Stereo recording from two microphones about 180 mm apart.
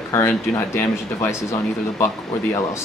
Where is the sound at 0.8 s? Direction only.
15° left (ahead or behind).